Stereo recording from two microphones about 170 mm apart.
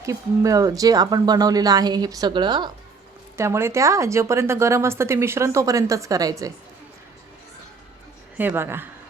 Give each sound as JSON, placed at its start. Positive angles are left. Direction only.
{"t": 0.0, "sound": "speech", "side_deg": -20}
{"t": 3.3, "sound": "a woman's voice", "side_deg": -15}
{"t": 8.4, "sound": "a woman's voice", "side_deg": -10}